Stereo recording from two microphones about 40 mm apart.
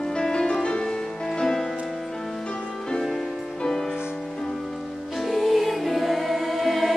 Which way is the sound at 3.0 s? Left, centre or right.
Centre.